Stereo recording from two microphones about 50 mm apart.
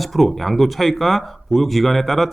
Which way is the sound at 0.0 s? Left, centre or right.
Centre.